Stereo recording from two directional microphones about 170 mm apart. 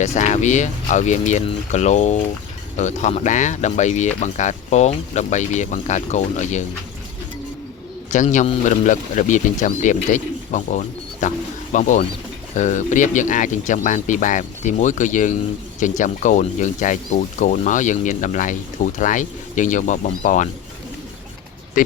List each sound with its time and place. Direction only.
0.0 s a man's voice: 40° left (ahead or behind)
8.1 s a man's voice: 45° left (ahead or behind)
21.8 s a man's voice: 50° left (ahead or behind)